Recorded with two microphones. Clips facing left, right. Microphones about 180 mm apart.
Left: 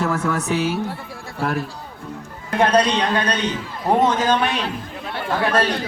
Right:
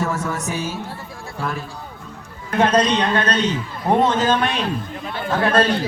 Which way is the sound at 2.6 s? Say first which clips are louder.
Even; 10° left (ahead or behind).